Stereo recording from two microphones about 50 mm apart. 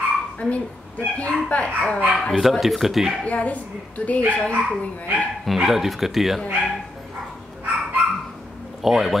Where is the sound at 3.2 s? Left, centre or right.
Left.